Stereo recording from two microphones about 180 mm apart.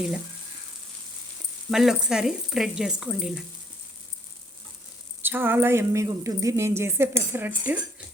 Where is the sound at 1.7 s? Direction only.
5° right (ahead or behind).